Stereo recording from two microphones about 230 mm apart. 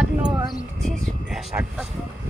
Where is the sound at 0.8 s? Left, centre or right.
Centre.